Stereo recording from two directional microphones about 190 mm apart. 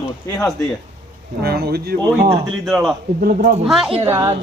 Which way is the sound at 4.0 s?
15° right (ahead or behind).